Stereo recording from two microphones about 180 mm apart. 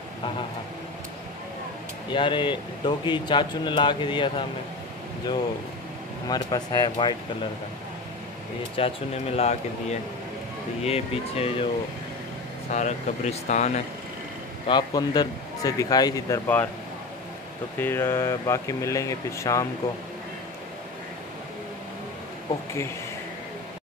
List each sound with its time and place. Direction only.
2.1 s speech: 25° left (ahead or behind)
6.2 s speech: 20° left (ahead or behind)
8.7 s speech: 35° left (ahead or behind)
12.7 s speech: 40° left (ahead or behind)
14.7 s speech: 25° left (ahead or behind)
17.7 s speech: 10° left (ahead or behind)